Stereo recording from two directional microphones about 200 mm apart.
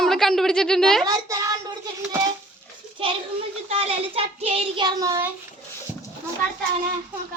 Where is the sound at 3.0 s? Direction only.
25° right (ahead or behind).